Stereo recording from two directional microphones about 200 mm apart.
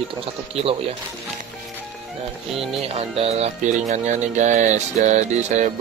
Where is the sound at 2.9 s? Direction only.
30° right (ahead or behind).